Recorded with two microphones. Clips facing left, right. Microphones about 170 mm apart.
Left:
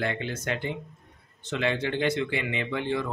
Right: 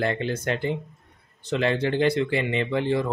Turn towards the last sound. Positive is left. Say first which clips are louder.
# right 5 dB
turn(degrees=-35)  # may be behind; listen again after turning